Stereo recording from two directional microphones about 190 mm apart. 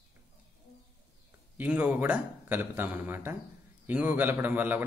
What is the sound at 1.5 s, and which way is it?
A man's voice, 10° right (ahead or behind).